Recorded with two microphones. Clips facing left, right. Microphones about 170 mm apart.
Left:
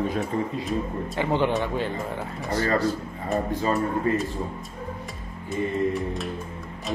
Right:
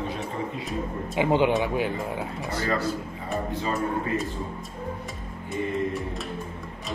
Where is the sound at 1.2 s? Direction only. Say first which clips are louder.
Right 2 dB; 15° right (ahead or behind).